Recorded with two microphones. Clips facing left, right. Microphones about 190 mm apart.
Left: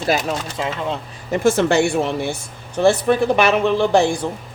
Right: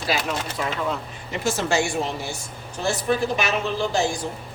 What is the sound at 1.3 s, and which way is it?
Speech, 55° left (ahead or behind).